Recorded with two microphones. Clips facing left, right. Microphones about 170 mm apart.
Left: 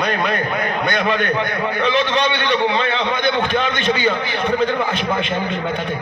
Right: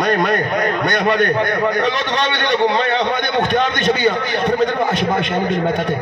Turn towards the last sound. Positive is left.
turn(degrees=-45)  # may be behind; listen again after turning